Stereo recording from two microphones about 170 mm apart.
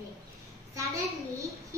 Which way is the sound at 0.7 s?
15° right (ahead or behind).